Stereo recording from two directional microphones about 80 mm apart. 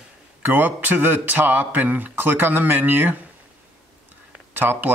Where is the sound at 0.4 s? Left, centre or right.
Right.